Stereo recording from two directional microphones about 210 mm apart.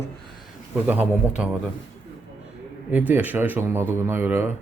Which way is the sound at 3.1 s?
10° right (ahead or behind).